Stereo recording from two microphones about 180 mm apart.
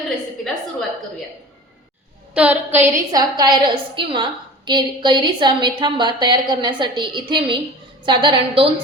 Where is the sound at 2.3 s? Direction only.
10° right (ahead or behind).